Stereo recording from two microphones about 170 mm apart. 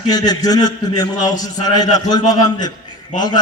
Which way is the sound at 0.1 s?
20° left (ahead or behind).